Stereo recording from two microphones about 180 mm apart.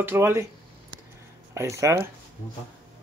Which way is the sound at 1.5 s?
15° right (ahead or behind).